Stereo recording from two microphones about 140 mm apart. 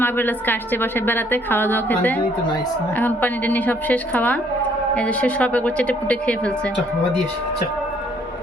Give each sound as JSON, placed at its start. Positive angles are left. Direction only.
{"t": 0.0, "sound": "a woman's voice", "side_deg": 15}